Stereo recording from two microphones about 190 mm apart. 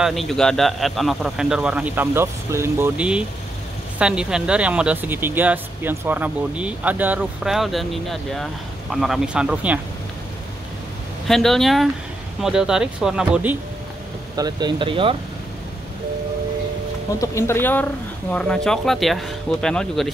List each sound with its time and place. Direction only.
0.0 s a man's voice: centre (ahead or behind)
11.2 s a man's voice: centre (ahead or behind)
14.3 s speech: 20° right (ahead or behind)
17.2 s a man's voice: 15° left (ahead or behind)